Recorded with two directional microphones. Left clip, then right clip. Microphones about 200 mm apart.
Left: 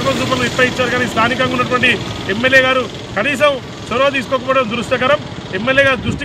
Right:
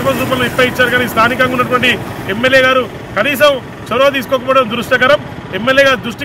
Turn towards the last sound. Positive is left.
turn(degrees=0)  # may be behind; listen again after turning